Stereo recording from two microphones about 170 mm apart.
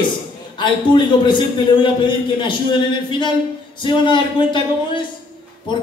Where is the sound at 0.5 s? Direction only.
30° left (ahead or behind).